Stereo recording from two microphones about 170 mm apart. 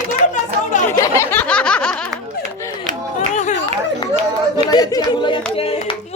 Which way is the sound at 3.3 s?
45° left (ahead or behind).